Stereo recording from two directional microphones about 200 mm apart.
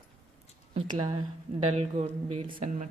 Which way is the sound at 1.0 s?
25° right (ahead or behind).